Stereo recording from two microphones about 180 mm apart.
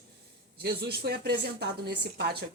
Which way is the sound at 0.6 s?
60° right (ahead or behind).